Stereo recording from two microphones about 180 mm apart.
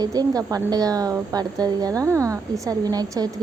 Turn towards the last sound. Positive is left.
turn(degrees=-20)  # may be behind; listen again after turning